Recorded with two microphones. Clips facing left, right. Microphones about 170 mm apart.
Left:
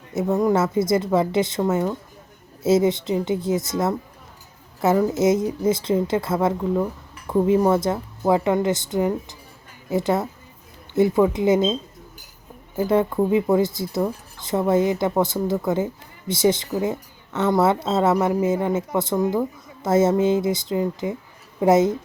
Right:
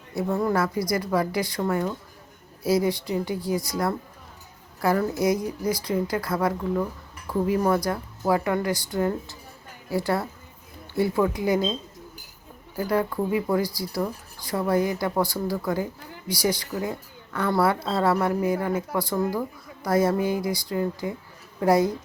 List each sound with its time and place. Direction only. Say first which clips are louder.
0.1 s speech: left 5 dB; 20° left (ahead or behind)